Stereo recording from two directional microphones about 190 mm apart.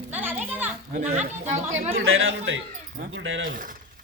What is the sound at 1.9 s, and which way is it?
Speech, 90° right.